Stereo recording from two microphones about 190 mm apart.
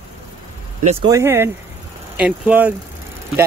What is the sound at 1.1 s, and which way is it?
Speech, 15° right (ahead or behind).